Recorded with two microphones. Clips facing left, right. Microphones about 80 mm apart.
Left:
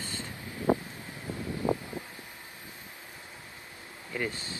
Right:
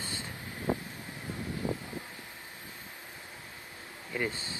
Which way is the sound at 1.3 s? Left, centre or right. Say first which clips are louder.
Left 5 dB; left.